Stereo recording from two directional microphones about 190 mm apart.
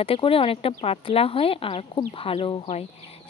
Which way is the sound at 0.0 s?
30° left (ahead or behind).